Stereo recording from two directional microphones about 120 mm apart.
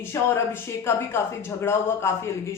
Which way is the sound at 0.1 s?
25° left (ahead or behind).